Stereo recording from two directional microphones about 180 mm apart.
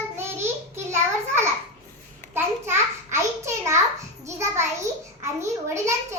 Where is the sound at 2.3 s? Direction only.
15° right (ahead or behind).